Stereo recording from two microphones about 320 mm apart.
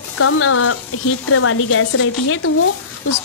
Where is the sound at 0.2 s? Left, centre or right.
Left.